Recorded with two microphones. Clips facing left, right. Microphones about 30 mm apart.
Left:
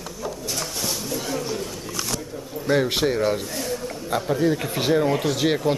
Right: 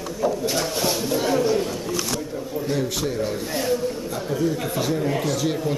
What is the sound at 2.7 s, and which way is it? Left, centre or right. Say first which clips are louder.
A man's voice: left 6 dB; left.